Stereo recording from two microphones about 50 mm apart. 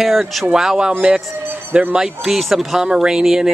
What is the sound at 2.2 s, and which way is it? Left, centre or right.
Speech, centre.